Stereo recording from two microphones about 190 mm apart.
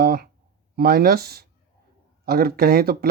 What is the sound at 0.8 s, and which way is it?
Speech, 55° right (ahead or behind).